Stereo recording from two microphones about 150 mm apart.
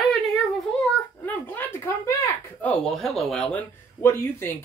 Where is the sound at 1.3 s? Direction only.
15° left (ahead or behind).